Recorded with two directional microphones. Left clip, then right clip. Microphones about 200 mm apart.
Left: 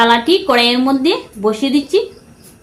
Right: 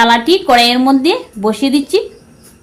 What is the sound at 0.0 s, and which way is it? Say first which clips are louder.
Speech: right 2 dB; 45° right (ahead or behind).